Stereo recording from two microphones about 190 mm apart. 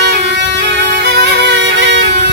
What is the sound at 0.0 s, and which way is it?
Music, 65° right (ahead or behind).